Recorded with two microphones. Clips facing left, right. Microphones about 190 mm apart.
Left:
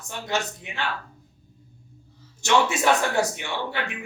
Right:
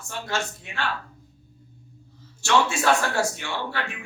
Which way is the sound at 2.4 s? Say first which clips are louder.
Left 1 dB; 20° left (ahead or behind).